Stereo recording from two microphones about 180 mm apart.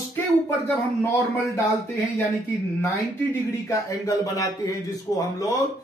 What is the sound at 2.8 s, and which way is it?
Speech, 15° left (ahead or behind).